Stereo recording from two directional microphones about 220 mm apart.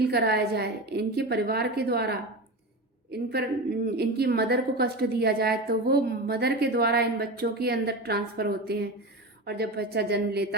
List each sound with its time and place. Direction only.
0.0 s a woman's voice: 45° right (ahead or behind)